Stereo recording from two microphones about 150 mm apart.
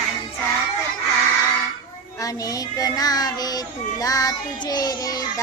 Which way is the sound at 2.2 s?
25° left (ahead or behind).